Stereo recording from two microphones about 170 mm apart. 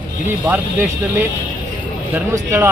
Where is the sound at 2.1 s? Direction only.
15° right (ahead or behind).